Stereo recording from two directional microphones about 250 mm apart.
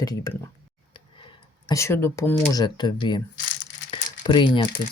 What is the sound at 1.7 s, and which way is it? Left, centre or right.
Speech, centre.